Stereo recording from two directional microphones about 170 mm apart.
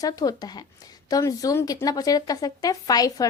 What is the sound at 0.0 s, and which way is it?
A woman's voice, 20° left (ahead or behind).